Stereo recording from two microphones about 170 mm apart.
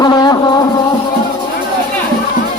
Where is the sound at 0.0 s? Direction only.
25° left (ahead or behind).